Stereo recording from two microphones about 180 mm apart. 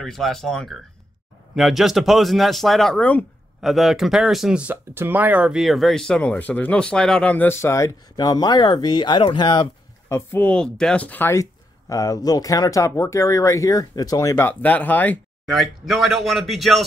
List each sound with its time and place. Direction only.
0.0 s speech: centre (ahead or behind); by 10.1 s 25° left (ahead or behind)
10.1 s speech: 10° left (ahead or behind)